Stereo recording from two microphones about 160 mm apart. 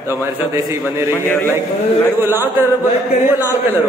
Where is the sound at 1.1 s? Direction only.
15° left (ahead or behind).